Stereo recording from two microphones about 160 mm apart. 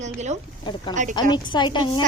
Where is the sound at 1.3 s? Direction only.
30° left (ahead or behind).